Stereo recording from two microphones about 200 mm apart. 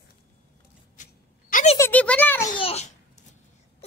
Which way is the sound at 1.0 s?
40° left (ahead or behind).